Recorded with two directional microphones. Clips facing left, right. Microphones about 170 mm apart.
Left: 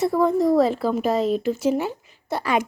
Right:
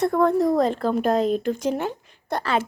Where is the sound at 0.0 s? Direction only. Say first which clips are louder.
Even; centre (ahead or behind).